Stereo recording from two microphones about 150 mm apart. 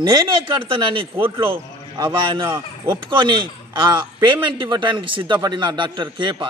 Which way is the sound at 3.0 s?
30° right (ahead or behind).